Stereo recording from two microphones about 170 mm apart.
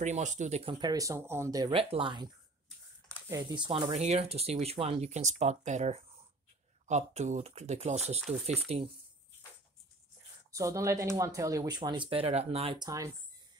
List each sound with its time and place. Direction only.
0.0 s speech: 45° right (ahead or behind)
0.7 s speech: 20° right (ahead or behind)
1.7 s speech: 30° right (ahead or behind)
3.9 s speech: 40° right (ahead or behind)
8.2 s speech: centre (ahead or behind)
8.7 s speech: 40° right (ahead or behind)
10.5 s speech: 20° right (ahead or behind)